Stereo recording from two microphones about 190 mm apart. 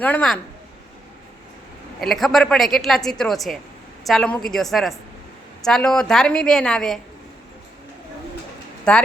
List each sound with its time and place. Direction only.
0.0 s a woman's voice: 5° left (ahead or behind)
2.0 s a woman's voice: centre (ahead or behind)
8.8 s speech: 5° left (ahead or behind)